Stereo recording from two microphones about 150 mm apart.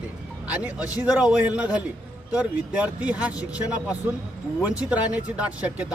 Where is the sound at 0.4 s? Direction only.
10° right (ahead or behind).